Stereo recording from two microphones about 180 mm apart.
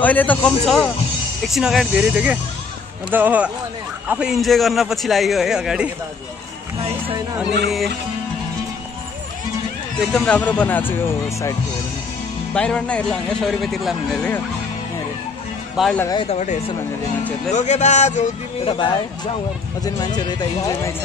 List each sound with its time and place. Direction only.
0.0 s a man's voice: 10° left (ahead or behind)
6.8 s music: 35° right (ahead or behind)
10.1 s speech: 5° left (ahead or behind)
12.5 s speech: 5° left (ahead or behind)
15.7 s speech: centre (ahead or behind)
16.2 s a man's voice: 40° left (ahead or behind)
20.2 s speech: 20° left (ahead or behind)